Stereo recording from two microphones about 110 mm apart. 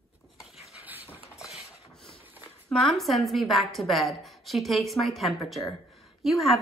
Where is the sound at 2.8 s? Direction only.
Centre (ahead or behind).